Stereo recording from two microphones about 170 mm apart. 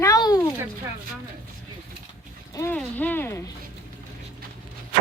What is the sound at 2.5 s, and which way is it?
A child's voice, 20° left (ahead or behind).